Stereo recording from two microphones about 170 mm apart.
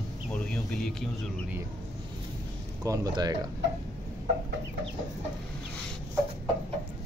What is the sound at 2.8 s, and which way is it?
Speech, 20° right (ahead or behind).